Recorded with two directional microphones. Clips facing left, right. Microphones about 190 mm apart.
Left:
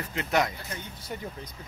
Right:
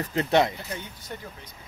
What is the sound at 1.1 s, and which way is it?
Speech, 10° left (ahead or behind).